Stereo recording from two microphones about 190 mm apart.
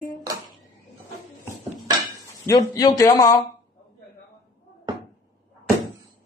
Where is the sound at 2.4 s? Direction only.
20° left (ahead or behind).